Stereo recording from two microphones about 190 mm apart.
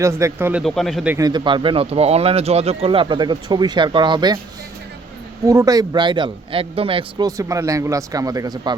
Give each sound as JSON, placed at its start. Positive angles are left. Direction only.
{"t": 0.0, "sound": "speech", "side_deg": -15}
{"t": 0.6, "sound": "speech", "side_deg": 0}
{"t": 1.1, "sound": "speech", "side_deg": -20}
{"t": 5.5, "sound": "speech", "side_deg": -20}